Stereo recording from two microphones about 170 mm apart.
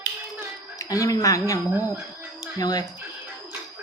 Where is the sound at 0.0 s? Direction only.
20° left (ahead or behind).